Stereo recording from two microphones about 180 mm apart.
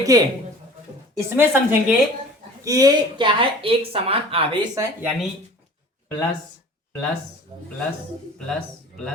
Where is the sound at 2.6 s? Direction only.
20° right (ahead or behind).